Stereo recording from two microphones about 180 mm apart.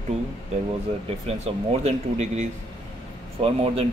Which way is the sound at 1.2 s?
35° right (ahead or behind).